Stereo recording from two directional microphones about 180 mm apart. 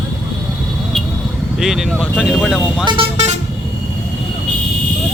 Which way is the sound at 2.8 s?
25° right (ahead or behind).